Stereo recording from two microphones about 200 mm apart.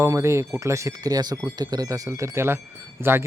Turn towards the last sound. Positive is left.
turn(degrees=-10)  # may be behind; listen again after turning